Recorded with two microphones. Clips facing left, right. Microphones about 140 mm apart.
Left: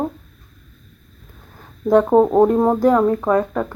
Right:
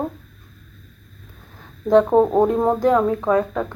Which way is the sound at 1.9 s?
10° left (ahead or behind).